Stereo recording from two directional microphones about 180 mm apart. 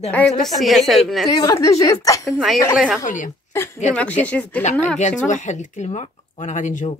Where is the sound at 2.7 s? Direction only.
5° right (ahead or behind).